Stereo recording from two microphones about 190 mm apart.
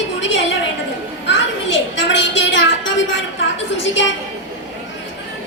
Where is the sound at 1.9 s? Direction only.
70° left (ahead or behind).